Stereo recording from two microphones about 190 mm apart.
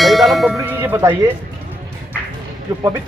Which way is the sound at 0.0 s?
Centre (ahead or behind).